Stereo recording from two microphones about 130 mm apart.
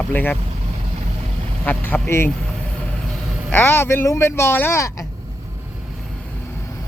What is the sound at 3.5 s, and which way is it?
Speech, 15° left (ahead or behind).